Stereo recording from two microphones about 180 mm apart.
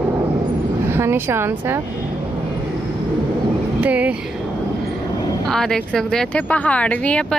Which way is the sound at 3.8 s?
10° right (ahead or behind).